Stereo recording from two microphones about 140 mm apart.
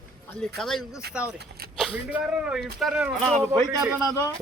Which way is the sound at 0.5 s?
Centre (ahead or behind).